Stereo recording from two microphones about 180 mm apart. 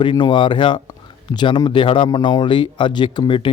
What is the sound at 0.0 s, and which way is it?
Speech, 25° left (ahead or behind).